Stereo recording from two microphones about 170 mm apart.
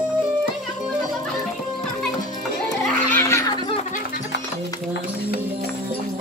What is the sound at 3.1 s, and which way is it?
Laughter, 15° left (ahead or behind).